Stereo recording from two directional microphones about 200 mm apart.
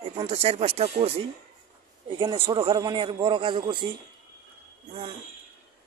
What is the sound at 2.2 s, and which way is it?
Speech, 25° right (ahead or behind).